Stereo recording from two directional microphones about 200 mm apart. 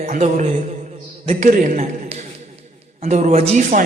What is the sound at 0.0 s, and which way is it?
A man's voice, 35° right (ahead or behind).